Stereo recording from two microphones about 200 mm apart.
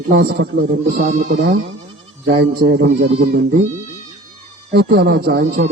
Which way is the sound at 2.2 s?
55° right (ahead or behind).